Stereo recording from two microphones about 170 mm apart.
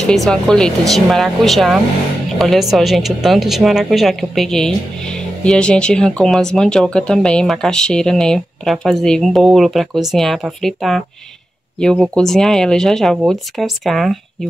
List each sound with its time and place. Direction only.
0.0 s speech: centre (ahead or behind)